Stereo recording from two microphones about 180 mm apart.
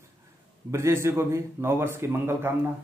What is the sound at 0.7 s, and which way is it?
Speech, 15° right (ahead or behind).